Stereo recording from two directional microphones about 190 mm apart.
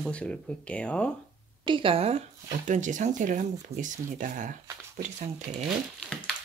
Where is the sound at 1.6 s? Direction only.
25° right (ahead or behind).